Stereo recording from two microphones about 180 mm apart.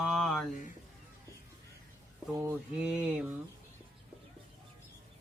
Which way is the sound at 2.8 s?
5° right (ahead or behind).